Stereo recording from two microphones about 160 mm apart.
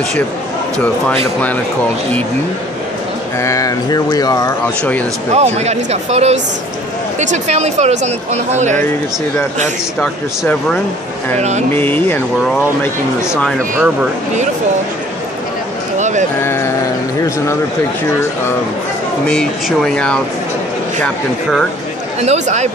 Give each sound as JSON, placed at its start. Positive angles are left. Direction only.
{"t": 3.3, "sound": "speech", "side_deg": 20}
{"t": 5.3, "sound": "speech", "side_deg": -45}
{"t": 10.4, "sound": "speech", "side_deg": 10}
{"t": 11.3, "sound": "speech", "side_deg": -45}
{"t": 11.7, "sound": "speech", "side_deg": 10}
{"t": 13.5, "sound": "speech", "side_deg": -5}
{"t": 16.0, "sound": "a sound", "side_deg": -50}
{"t": 16.3, "sound": "speech", "side_deg": 15}
{"t": 19.2, "sound": "speech", "side_deg": 5}
{"t": 22.2, "sound": "speech", "side_deg": -45}